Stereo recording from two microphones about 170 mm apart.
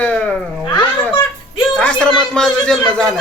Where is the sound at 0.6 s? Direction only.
25° left (ahead or behind).